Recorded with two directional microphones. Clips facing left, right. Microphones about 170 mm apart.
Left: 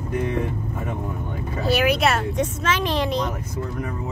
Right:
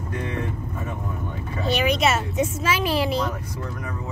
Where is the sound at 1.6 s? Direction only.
5° left (ahead or behind).